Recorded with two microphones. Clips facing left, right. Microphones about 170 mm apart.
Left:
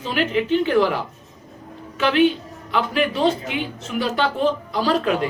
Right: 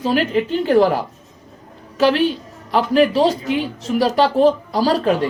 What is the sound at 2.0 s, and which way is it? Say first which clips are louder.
A woman's voice: right 2 dB; 40° right (ahead or behind).